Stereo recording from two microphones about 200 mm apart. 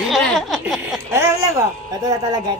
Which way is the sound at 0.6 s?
Centre (ahead or behind).